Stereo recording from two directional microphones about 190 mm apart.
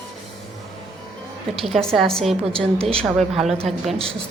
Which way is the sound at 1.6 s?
Centre (ahead or behind).